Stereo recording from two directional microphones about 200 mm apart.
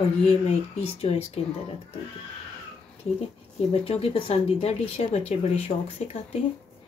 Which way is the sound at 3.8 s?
30° left (ahead or behind).